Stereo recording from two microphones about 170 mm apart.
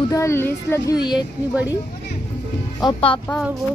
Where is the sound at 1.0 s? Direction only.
25° left (ahead or behind).